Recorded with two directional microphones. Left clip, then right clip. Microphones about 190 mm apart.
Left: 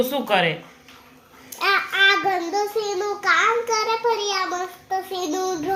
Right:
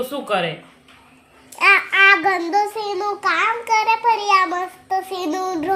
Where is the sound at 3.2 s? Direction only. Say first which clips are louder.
Left 2 dB; 55° right (ahead or behind).